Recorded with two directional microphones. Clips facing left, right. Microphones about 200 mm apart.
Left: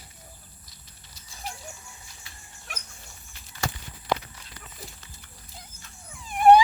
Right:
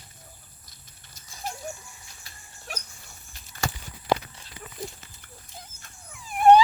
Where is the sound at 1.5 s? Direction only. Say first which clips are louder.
Right 3 dB; 45° right (ahead or behind).